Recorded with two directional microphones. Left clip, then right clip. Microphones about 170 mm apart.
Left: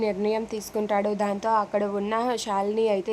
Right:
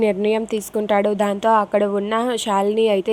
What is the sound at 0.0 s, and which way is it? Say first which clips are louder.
A woman's voice: right 7 dB; 25° right (ahead or behind).